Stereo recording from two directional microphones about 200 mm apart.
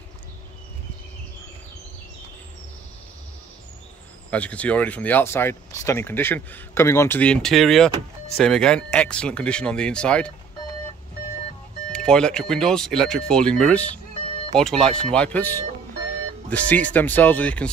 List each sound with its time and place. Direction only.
4.3 s speech: 5° left (ahead or behind)
11.9 s speech: 5° left (ahead or behind)